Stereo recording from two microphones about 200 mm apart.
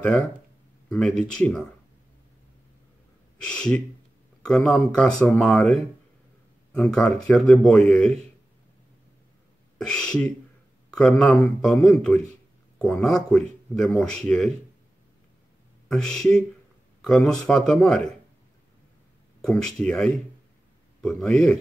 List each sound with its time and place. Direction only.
0.8 s speech: 5° left (ahead or behind)
3.4 s speech: 5° left (ahead or behind)
9.8 s speech: 5° left (ahead or behind)
15.9 s speech: 5° left (ahead or behind)
19.4 s speech: 5° left (ahead or behind)